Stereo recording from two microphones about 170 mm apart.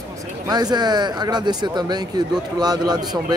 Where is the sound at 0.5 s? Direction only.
25° right (ahead or behind).